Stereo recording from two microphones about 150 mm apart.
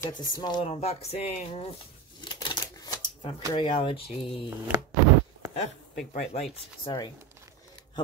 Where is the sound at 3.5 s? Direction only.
35° left (ahead or behind).